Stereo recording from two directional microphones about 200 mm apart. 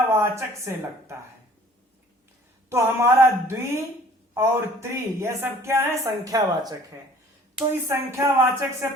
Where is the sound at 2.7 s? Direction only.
15° right (ahead or behind).